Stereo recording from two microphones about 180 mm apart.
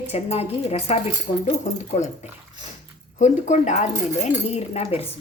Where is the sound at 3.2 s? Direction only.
40° left (ahead or behind).